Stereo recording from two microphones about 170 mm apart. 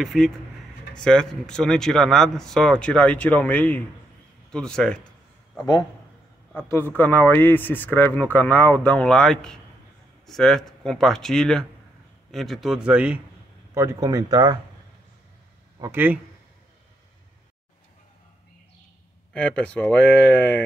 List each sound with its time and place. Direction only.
0.0 s speech: centre (ahead or behind)
6.5 s speech: 10° left (ahead or behind); by 13.2 s 5° right (ahead or behind)
13.7 s speech: 20° right (ahead or behind)
15.8 s speech: 10° right (ahead or behind)
19.3 s speech: 5° left (ahead or behind)